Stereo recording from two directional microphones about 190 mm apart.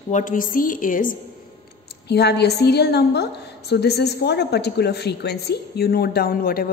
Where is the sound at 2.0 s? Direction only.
60° left (ahead or behind).